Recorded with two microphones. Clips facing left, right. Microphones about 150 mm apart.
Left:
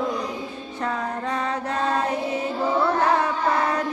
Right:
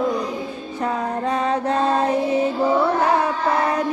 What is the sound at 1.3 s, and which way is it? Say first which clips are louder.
Mantra: right 7 dB; 25° right (ahead or behind).